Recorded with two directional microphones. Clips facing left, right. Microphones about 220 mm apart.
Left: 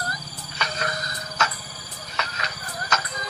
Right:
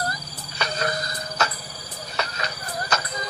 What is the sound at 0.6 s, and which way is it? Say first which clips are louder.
Music: right 3 dB; 35° right (ahead or behind).